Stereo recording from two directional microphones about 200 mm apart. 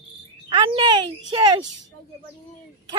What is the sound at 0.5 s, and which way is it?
A child's voice, 25° right (ahead or behind).